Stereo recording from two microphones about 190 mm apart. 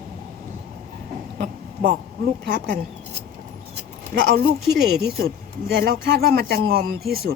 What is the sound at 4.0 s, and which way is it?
Speech, 55° right (ahead or behind).